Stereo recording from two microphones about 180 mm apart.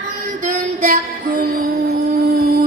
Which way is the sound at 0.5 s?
50° right (ahead or behind).